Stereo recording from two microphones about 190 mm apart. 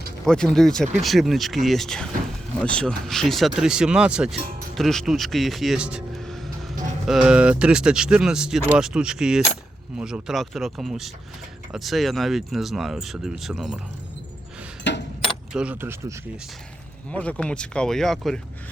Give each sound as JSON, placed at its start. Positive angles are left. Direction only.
{"t": 0.3, "sound": "speech", "side_deg": 5}
{"t": 14.9, "sound": "keys jangling", "side_deg": 65}
{"t": 15.5, "sound": "speech", "side_deg": -5}
{"t": 17.1, "sound": "speech", "side_deg": 5}